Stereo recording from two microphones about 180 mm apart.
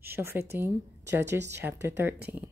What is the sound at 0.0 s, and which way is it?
Speech, 10° right (ahead or behind).